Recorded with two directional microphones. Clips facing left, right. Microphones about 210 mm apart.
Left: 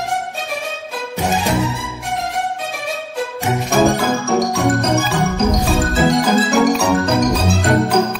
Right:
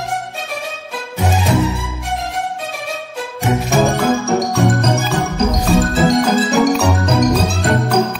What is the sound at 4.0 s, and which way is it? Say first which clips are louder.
Music: right 1 dB; centre (ahead or behind).